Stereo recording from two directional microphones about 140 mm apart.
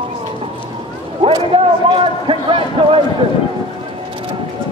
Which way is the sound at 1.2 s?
35° right (ahead or behind).